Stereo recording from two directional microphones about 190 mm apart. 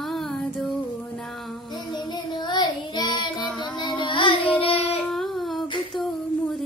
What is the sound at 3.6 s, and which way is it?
Music, 20° left (ahead or behind).